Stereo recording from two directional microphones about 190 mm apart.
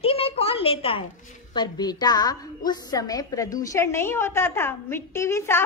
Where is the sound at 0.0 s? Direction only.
30° left (ahead or behind).